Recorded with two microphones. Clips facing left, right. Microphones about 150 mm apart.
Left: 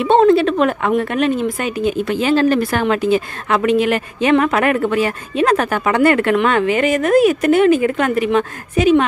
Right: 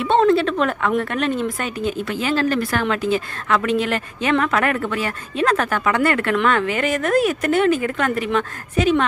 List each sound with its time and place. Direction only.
0.0 s a woman's voice: 15° left (ahead or behind)